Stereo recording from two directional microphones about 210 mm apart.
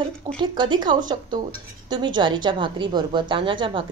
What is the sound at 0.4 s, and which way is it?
A woman's voice, 20° right (ahead or behind).